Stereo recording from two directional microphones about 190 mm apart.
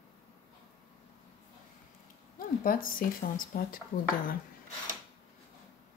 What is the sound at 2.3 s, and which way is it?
Speech, 45° left (ahead or behind).